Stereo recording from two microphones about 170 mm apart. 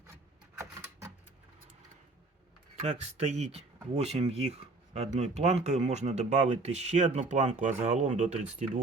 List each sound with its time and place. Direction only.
2.8 s speech: 40° right (ahead or behind)